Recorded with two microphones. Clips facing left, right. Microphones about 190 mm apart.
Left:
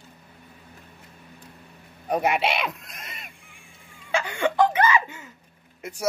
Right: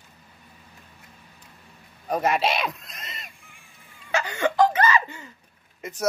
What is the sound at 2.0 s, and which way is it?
Speech, 15° left (ahead or behind).